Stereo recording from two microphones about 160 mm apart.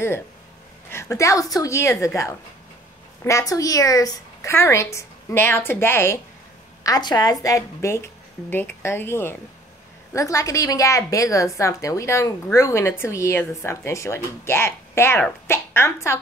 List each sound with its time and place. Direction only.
0.8 s a woman's voice: 15° left (ahead or behind)